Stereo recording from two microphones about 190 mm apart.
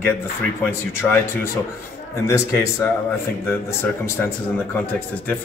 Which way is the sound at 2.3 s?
15° left (ahead or behind).